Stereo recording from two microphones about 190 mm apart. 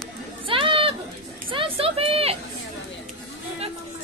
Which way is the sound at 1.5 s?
30° right (ahead or behind).